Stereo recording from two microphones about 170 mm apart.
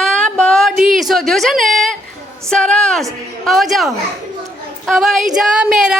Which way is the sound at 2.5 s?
5° left (ahead or behind).